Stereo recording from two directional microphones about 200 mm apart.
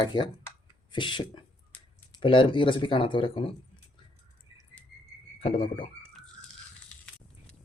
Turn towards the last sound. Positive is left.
turn(degrees=25)  # may be behind; listen again after turning